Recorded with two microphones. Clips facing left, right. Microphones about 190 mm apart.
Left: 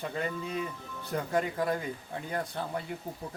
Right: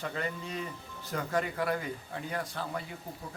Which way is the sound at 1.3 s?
20° left (ahead or behind).